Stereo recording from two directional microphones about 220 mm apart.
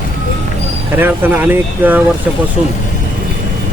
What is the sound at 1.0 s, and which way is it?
Speech, 10° right (ahead or behind).